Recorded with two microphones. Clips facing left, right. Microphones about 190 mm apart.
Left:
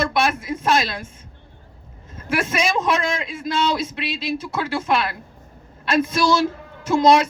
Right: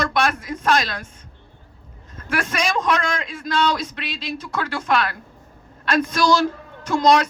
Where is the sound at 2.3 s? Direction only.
5° left (ahead or behind).